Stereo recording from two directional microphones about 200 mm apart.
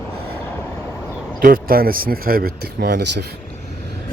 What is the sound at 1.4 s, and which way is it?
Speech, 45° right (ahead or behind).